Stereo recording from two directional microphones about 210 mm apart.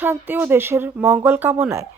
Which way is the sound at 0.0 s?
10° right (ahead or behind).